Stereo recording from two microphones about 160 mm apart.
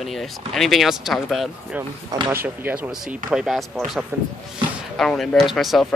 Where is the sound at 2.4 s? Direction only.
10° right (ahead or behind).